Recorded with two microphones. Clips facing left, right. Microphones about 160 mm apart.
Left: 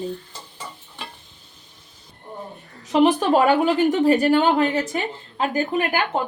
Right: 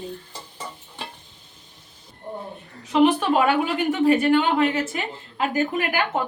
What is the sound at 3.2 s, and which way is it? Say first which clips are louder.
A woman's voice: left 3 dB; 35° left (ahead or behind).